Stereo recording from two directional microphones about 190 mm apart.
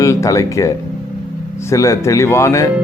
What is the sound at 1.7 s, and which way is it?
Speech, 15° left (ahead or behind).